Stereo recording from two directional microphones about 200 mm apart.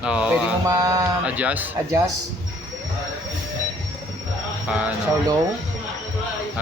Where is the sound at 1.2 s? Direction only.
5° right (ahead or behind).